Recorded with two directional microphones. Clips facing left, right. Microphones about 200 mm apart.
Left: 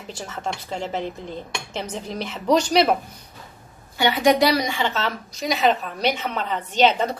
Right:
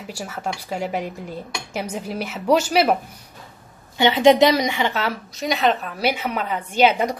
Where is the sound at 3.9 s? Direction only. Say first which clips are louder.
Right 4 dB; 25° right (ahead or behind).